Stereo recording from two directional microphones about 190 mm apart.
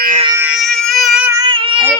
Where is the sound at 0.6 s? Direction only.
Centre (ahead or behind).